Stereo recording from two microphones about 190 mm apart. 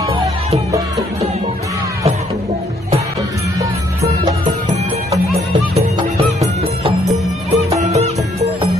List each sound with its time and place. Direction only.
0.0 s music: 20° right (ahead or behind)
5.8 s music: 35° right (ahead or behind)
7.5 s music: 35° right (ahead or behind)